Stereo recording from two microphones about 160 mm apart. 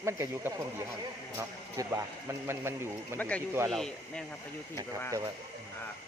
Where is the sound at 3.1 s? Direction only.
10° left (ahead or behind).